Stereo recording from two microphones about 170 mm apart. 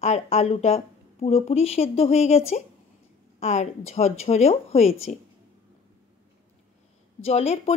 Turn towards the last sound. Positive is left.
turn(degrees=40)  # may be behind; listen again after turning